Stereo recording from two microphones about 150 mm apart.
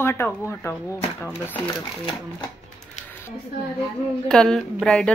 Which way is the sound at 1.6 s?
30° left (ahead or behind).